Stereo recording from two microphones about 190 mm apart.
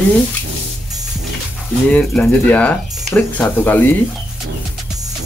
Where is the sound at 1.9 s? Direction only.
10° left (ahead or behind).